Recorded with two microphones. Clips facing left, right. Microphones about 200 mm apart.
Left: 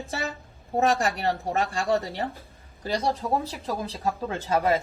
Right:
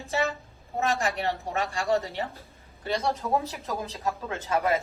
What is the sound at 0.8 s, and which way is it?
Speech, 35° left (ahead or behind).